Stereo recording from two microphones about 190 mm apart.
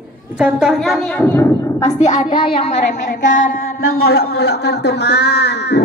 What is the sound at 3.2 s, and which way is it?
Music, 45° left (ahead or behind).